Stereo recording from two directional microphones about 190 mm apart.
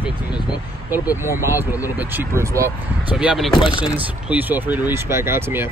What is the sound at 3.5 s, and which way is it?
Speech, 25° left (ahead or behind).